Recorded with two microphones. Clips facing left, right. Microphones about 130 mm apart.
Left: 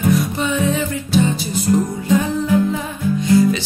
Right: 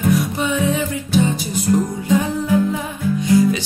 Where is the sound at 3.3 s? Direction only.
15° right (ahead or behind).